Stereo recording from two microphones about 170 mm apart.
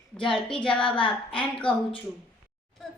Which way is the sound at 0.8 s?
30° left (ahead or behind).